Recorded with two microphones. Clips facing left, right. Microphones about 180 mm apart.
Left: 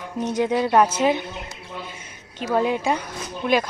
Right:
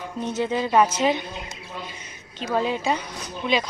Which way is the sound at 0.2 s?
15° left (ahead or behind).